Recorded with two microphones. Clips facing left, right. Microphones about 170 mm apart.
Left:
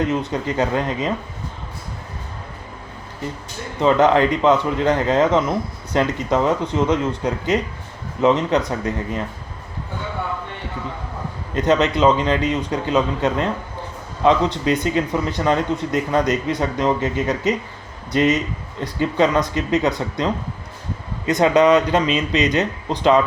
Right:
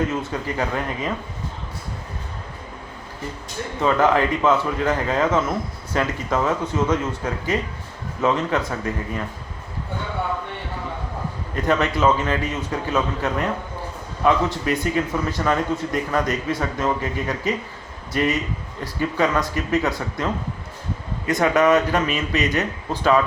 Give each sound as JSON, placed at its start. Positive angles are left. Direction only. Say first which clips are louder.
{"t": 0.1, "sound": "speech", "louder": "left 4 dB", "side_deg": 20}
{"t": 3.8, "sound": "speech", "louder": "left 4 dB", "side_deg": 20}
{"t": 11.5, "sound": "speech", "louder": "left 4 dB", "side_deg": 20}